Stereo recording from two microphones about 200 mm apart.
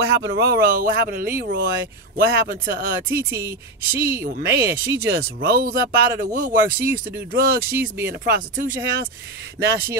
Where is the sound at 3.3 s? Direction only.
15° right (ahead or behind).